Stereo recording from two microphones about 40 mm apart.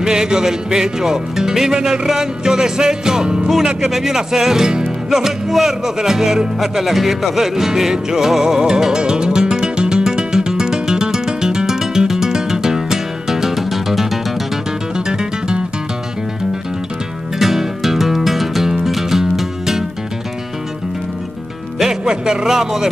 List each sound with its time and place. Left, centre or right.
0.0 s music: centre
3.9 s music: centre
5.2 s speech: centre
5.9 s music: centre
15.0 s music: centre
17.4 s music: centre
21.7 s music: centre